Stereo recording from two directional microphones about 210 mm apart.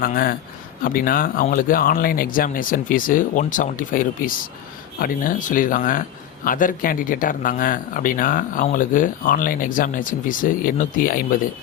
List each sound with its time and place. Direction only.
0.0 s speech: 40° left (ahead or behind)